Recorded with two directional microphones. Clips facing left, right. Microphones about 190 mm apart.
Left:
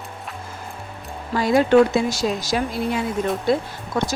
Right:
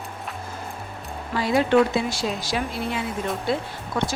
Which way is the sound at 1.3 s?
45° left (ahead or behind).